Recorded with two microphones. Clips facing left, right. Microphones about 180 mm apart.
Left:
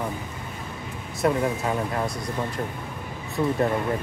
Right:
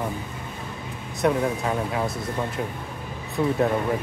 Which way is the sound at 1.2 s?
Centre (ahead or behind).